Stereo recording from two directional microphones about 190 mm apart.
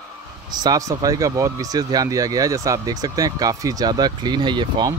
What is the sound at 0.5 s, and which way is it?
A man's voice, 20° right (ahead or behind).